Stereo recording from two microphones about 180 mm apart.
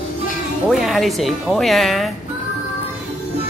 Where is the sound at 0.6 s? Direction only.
Centre (ahead or behind).